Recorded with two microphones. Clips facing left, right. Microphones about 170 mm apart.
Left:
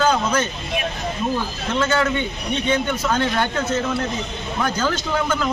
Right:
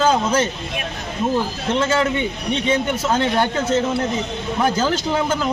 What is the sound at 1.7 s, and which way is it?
A man's voice, 25° right (ahead or behind).